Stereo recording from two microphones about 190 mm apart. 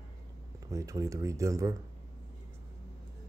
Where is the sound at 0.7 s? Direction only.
15° right (ahead or behind).